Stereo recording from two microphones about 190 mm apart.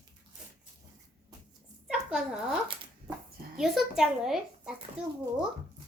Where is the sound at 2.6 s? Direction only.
30° right (ahead or behind).